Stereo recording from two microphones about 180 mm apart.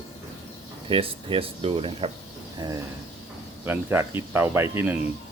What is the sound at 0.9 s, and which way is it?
Speech, 30° right (ahead or behind).